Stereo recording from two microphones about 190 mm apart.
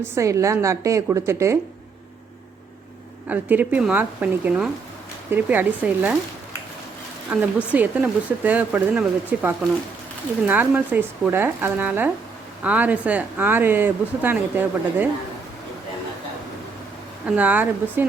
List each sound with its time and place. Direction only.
0.2 s speech: 15° right (ahead or behind)
3.2 s speech: 10° right (ahead or behind)
7.3 s speech: 5° right (ahead or behind)
17.2 s speech: 10° right (ahead or behind)